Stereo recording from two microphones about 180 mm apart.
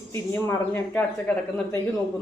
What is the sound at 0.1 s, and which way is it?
Speech, 10° left (ahead or behind).